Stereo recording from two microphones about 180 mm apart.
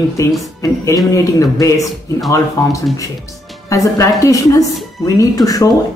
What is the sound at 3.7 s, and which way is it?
Speech, 15° left (ahead or behind).